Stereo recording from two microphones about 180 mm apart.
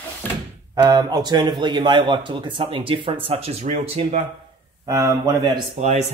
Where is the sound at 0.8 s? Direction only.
25° right (ahead or behind).